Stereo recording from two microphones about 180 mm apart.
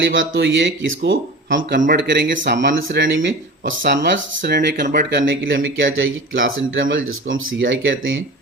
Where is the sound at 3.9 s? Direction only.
75° right (ahead or behind).